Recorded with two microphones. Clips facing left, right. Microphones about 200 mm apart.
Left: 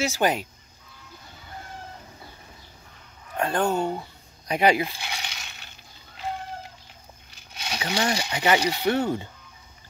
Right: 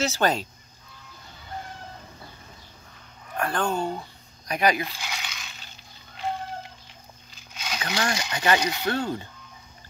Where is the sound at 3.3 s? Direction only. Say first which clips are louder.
Left 2 dB; 20° left (ahead or behind).